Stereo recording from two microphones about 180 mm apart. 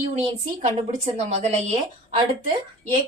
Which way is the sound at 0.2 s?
40° right (ahead or behind).